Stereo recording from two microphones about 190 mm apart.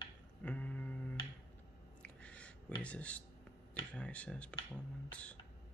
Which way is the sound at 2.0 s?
5° left (ahead or behind).